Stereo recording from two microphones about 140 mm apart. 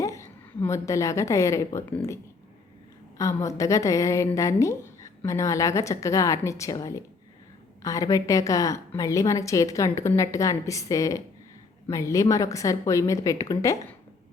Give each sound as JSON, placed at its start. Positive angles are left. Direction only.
{"t": 0.0, "sound": "a woman's voice", "side_deg": 20}
{"t": 3.2, "sound": "a woman's voice", "side_deg": 20}